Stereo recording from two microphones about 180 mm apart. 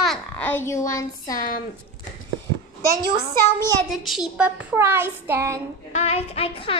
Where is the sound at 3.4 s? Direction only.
15° left (ahead or behind).